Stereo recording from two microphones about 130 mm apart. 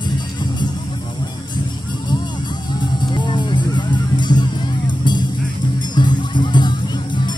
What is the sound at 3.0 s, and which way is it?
Music, 35° left (ahead or behind).